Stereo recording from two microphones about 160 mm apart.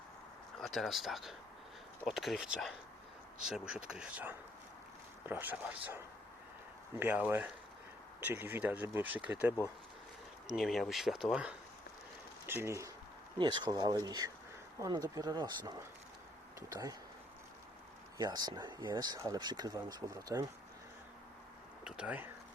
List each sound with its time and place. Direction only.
0.6 s speech: centre (ahead or behind)
7.0 s speech: 10° right (ahead or behind)
12.5 s speech: 15° right (ahead or behind)
13.4 s speech: 25° right (ahead or behind)
18.2 s speech: 25° right (ahead or behind)
21.8 s speech: 5° right (ahead or behind)